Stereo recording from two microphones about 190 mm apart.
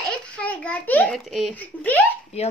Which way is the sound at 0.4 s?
5° left (ahead or behind).